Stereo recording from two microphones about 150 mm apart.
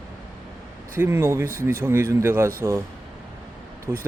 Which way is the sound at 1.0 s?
15° right (ahead or behind).